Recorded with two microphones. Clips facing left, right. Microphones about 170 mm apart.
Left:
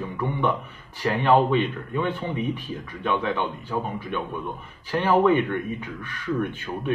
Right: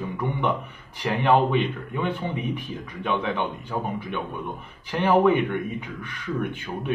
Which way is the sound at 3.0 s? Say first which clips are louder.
Left 1 dB; 15° right (ahead or behind).